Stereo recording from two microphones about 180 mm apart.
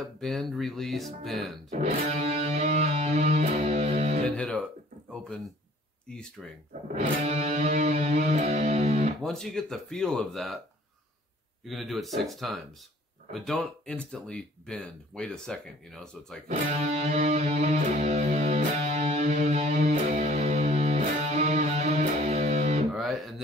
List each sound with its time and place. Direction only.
0.0 s speech: centre (ahead or behind)
1.7 s music: 35° right (ahead or behind)
4.4 s speech: 5° left (ahead or behind)
6.1 s speech: 5° left (ahead or behind)
6.7 s music: 40° right (ahead or behind)
9.2 s speech: 5° left (ahead or behind)
11.6 s speech: centre (ahead or behind)
16.4 s music: 40° right (ahead or behind)
22.9 s music: centre (ahead or behind)